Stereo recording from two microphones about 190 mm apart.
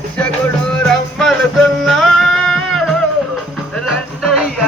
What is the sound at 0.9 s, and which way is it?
Music, centre (ahead or behind).